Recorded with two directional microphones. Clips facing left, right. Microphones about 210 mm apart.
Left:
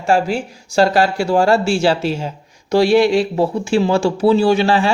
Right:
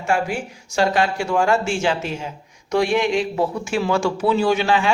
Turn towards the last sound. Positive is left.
turn(degrees=35)  # may be behind; listen again after turning